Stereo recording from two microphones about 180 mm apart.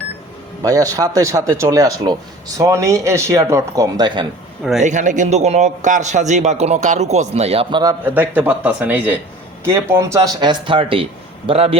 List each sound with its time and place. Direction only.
0.6 s a man's voice: 20° right (ahead or behind)
4.8 s a man's voice: 40° right (ahead or behind); by 7.9 s 25° right (ahead or behind)
8.1 s a man's voice: 10° right (ahead or behind); by 11.8 s 35° right (ahead or behind)